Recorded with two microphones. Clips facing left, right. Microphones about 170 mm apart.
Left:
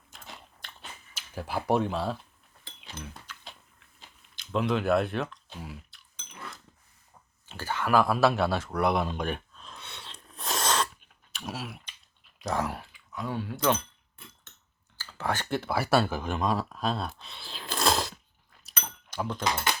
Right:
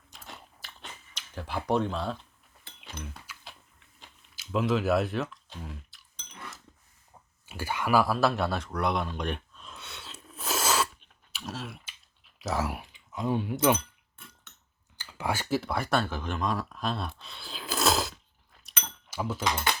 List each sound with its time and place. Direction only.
0.1 s biting: centre (ahead or behind)
3.0 s typing: centre (ahead or behind)
7.4 s speech: 10° right (ahead or behind); by 9.0 s 5° left (ahead or behind)
9.1 s a sound: centre (ahead or behind)
11.4 s speech: 5° left (ahead or behind)
11.9 s typing: centre (ahead or behind)
12.9 s speech: 20° right (ahead or behind)
14.9 s speech: 10° right (ahead or behind)
19.1 s speech: 5° right (ahead or behind)